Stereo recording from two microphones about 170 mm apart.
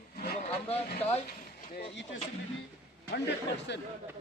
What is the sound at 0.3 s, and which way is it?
Speech, 40° left (ahead or behind).